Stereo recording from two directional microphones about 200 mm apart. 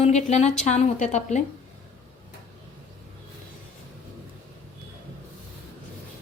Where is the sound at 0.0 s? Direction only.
35° left (ahead or behind).